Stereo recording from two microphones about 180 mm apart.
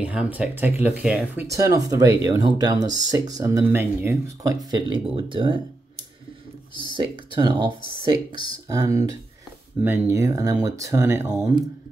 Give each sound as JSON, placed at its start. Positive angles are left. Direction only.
{"t": 0.0, "sound": "speech", "side_deg": -5}
{"t": 7.0, "sound": "speech", "side_deg": -25}